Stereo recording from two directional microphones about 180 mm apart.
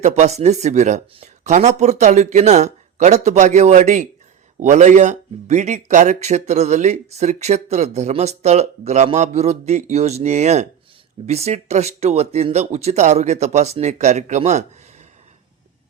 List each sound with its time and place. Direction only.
0.0 s speech: 40° right (ahead or behind)